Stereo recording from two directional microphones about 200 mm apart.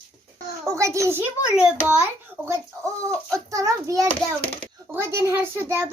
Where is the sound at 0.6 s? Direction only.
15° right (ahead or behind).